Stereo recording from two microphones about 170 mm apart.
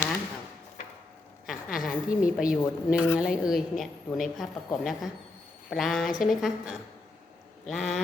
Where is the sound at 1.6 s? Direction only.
55° left (ahead or behind).